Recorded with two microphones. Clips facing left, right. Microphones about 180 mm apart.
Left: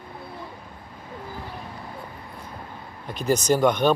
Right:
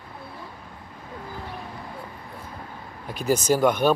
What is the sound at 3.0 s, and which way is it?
Speech, 5° right (ahead or behind).